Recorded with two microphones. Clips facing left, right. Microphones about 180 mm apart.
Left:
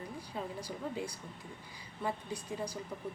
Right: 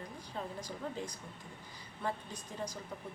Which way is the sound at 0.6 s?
10° left (ahead or behind).